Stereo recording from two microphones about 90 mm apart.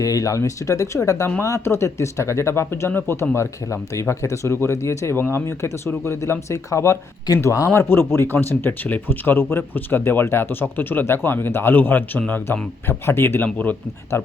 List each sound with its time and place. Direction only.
0.0 s speech: 40° left (ahead or behind); by 13.7 s 20° left (ahead or behind)